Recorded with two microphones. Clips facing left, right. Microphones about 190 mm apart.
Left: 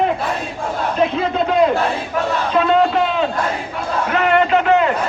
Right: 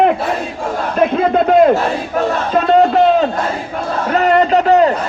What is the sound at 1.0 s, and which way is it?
Battle cry, 55° right (ahead or behind).